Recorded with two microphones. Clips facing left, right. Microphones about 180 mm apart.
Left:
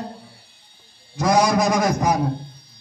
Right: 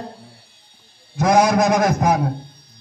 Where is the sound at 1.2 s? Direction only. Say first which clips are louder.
Right 3 dB; 55° right (ahead or behind).